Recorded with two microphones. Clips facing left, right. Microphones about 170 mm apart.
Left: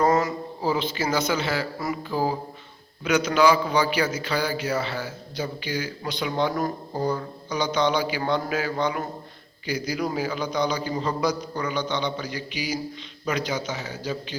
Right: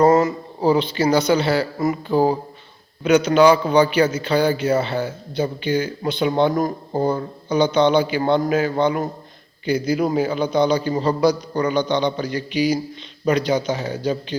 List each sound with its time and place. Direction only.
0.0 s a sound: 30° right (ahead or behind)
0.9 s a man's voice: 35° right (ahead or behind)
6.6 s speech: 55° right (ahead or behind)
7.1 s a man's voice: 30° right (ahead or behind)